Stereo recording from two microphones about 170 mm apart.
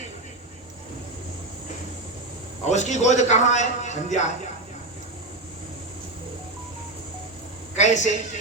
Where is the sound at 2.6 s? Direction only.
45° left (ahead or behind).